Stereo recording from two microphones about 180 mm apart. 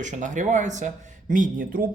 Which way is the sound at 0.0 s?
45° right (ahead or behind).